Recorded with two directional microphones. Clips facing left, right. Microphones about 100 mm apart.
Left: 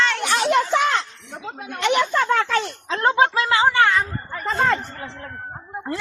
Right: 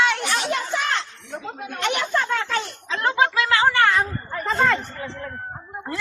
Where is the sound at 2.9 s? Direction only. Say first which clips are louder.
Left 3 dB; 30° left (ahead or behind).